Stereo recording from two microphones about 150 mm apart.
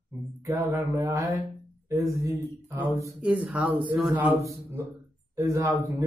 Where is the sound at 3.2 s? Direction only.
10° right (ahead or behind).